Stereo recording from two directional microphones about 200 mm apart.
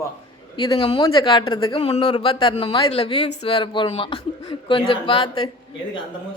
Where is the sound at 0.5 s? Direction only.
25° left (ahead or behind).